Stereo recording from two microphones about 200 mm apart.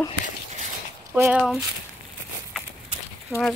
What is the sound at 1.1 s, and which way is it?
Speech, 10° right (ahead or behind).